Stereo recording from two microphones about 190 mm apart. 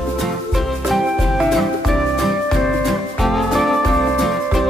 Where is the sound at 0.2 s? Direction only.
Centre (ahead or behind).